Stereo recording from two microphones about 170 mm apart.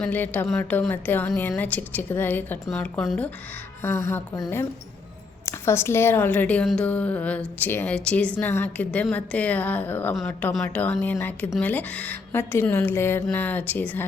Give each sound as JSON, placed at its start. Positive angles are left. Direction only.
{"t": 0.0, "sound": "a woman's voice", "side_deg": 10}
{"t": 3.8, "sound": "a woman's voice", "side_deg": 15}